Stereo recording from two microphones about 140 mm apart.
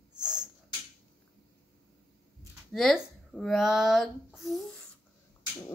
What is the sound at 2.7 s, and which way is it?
Speech, centre (ahead or behind).